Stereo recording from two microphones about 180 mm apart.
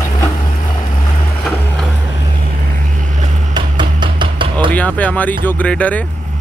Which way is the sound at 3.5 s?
25° right (ahead or behind).